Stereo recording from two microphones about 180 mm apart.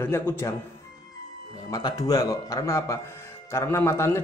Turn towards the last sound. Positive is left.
turn(degrees=15)  # may be behind; listen again after turning